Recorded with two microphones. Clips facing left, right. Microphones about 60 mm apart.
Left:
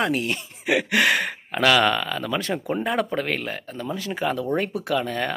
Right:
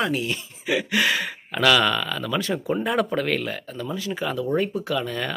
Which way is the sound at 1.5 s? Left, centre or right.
Left.